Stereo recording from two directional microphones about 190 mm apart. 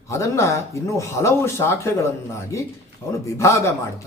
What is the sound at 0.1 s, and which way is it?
A man's voice, 15° left (ahead or behind).